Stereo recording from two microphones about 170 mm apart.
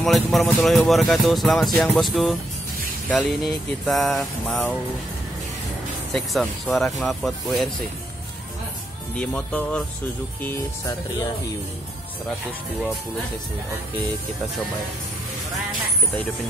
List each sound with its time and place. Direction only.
0.0 s speech: centre (ahead or behind)
6.1 s speech: centre (ahead or behind)
9.2 s speech: 10° left (ahead or behind)
10.4 s speech: 15° left (ahead or behind)